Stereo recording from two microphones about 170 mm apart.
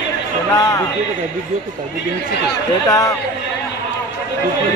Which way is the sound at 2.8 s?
20° left (ahead or behind).